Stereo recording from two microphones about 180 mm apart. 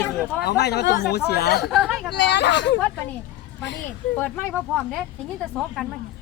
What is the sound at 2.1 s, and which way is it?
Speech, 80° left.